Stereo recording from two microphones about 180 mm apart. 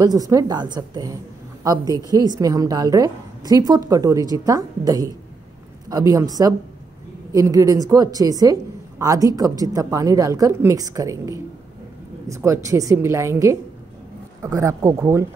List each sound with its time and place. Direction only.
0.0 s a woman's voice: 20° right (ahead or behind)